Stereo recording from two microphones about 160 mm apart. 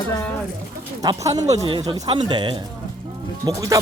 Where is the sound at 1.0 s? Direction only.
20° right (ahead or behind).